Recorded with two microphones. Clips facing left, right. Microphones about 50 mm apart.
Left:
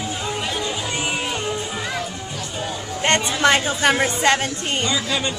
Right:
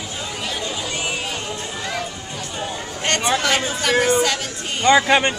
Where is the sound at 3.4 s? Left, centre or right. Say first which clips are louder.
Left 4 dB; left.